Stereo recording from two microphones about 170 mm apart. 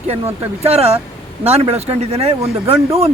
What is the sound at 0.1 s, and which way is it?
Speech, 35° right (ahead or behind).